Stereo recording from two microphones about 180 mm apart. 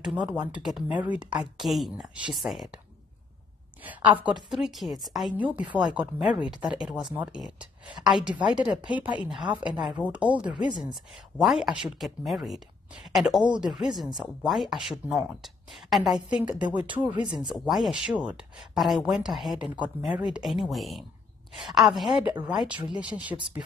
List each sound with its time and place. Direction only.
0.0 s speech: 5° right (ahead or behind)
3.8 s speech: 10° right (ahead or behind)
10.5 s speech: 25° right (ahead or behind)
11.3 s speech: centre (ahead or behind)
17.3 s speech: 25° right (ahead or behind)
17.6 s speech: centre (ahead or behind)